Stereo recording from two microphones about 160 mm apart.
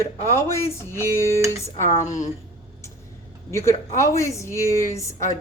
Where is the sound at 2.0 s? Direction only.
50° left (ahead or behind).